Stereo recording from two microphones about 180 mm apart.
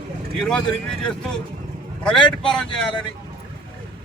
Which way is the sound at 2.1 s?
25° left (ahead or behind).